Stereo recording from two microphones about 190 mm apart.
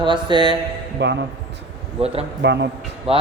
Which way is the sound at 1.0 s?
65° right (ahead or behind).